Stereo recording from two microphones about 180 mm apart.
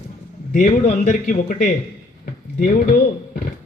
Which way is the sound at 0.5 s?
45° left (ahead or behind).